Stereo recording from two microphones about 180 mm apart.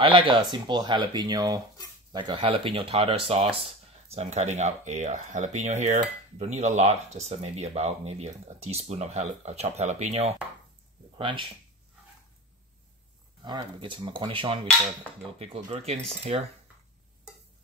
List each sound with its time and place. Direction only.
0.0 s speech: 30° right (ahead or behind)
13.4 s speech: 25° right (ahead or behind)